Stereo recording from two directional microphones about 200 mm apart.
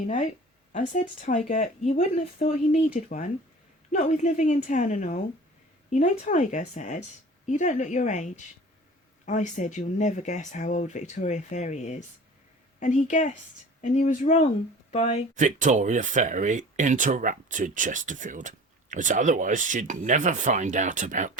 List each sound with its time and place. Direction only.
0.7 s speech: 40° left (ahead or behind)
15.4 s speech: 40° right (ahead or behind)